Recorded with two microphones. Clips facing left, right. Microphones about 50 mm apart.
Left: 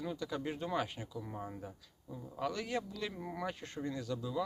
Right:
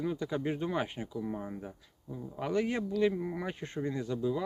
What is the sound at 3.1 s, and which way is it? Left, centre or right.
Speech, centre.